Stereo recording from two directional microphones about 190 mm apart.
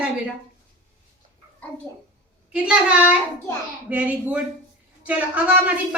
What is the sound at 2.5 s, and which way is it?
Speech, 5° right (ahead or behind).